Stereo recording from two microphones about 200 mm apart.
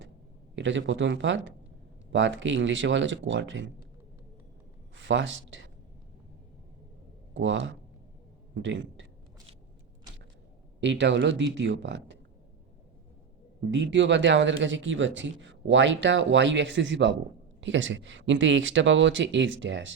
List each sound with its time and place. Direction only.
0.5 s speech: 65° right (ahead or behind)
4.9 s speech: 70° right (ahead or behind)
7.3 s a man's voice: 70° right (ahead or behind)
10.8 s speech: 65° right (ahead or behind)
13.6 s speech: 65° right (ahead or behind)